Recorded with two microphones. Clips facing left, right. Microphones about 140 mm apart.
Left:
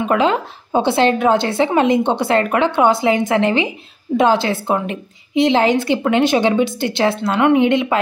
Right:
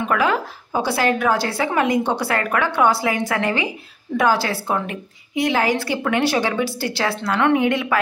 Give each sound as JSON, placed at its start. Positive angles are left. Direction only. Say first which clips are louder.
{"t": 0.0, "sound": "a woman's voice", "louder": "left 4 dB", "side_deg": 25}